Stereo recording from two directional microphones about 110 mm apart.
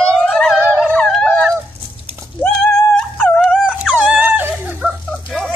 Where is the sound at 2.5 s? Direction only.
10° left (ahead or behind).